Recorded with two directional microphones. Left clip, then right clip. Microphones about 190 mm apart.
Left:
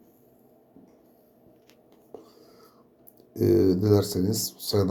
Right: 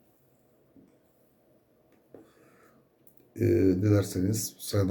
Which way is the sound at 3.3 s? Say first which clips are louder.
Left 4 dB; 15° left (ahead or behind).